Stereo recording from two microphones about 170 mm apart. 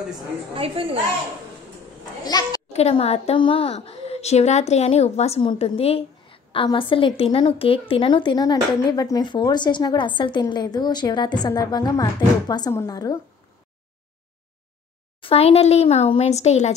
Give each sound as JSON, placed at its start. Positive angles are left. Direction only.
{"t": 2.2, "sound": "a woman's voice", "side_deg": 20}
{"t": 2.7, "sound": "a woman's voice", "side_deg": 40}
{"t": 15.2, "sound": "speech", "side_deg": 35}